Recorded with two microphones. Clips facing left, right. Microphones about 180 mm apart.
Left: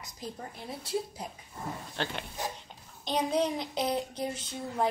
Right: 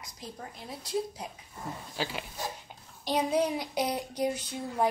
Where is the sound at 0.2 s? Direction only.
Centre (ahead or behind).